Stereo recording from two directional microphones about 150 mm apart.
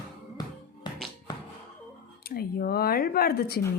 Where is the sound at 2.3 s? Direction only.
90° left.